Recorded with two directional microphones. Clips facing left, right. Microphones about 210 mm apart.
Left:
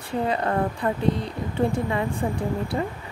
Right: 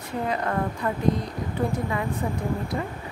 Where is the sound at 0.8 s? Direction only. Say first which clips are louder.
Left 1 dB; 30° left (ahead or behind).